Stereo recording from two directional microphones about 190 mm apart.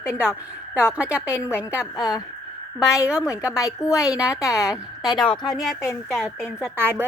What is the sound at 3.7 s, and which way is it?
Speech, 15° left (ahead or behind).